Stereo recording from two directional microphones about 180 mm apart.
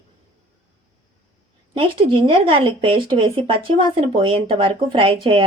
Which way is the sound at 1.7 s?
30° right (ahead or behind).